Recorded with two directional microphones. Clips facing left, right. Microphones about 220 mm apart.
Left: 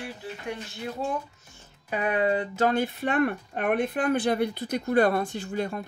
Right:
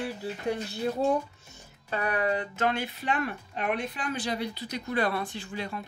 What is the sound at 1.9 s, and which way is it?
Speech, 20° left (ahead or behind).